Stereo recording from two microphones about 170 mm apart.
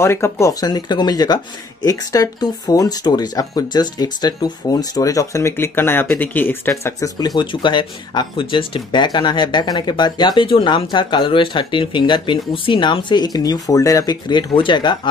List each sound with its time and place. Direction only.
0.0 s speech: 15° left (ahead or behind)